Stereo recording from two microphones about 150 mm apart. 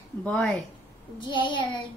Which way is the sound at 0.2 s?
10° left (ahead or behind).